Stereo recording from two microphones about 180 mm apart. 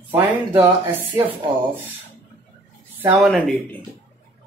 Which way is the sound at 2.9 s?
10° right (ahead or behind).